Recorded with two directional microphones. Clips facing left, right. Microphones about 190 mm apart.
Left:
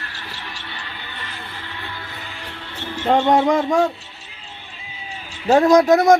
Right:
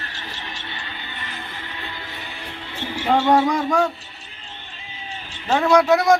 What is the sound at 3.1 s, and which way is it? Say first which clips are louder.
Speech: left 1 dB; 25° left (ahead or behind).